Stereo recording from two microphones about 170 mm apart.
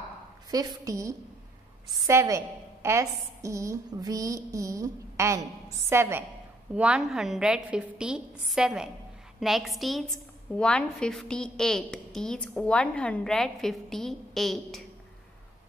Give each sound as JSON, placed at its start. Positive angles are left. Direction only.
{"t": 0.5, "sound": "a woman's voice", "side_deg": -20}